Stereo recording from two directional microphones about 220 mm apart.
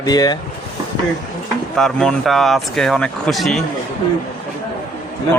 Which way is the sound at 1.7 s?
Centre (ahead or behind).